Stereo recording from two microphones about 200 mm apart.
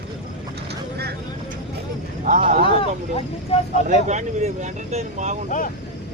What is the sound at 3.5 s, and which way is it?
Vehicle, 30° left (ahead or behind).